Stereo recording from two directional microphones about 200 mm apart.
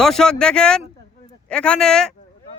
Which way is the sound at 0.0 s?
Centre (ahead or behind).